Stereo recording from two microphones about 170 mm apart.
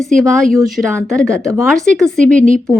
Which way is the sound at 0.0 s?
Centre (ahead or behind).